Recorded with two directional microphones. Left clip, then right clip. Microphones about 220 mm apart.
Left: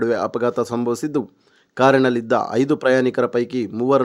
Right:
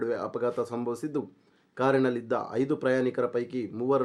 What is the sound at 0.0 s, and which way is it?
Speech, 40° left (ahead or behind).